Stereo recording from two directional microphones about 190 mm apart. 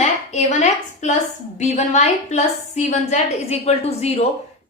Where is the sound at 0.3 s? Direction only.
35° left (ahead or behind).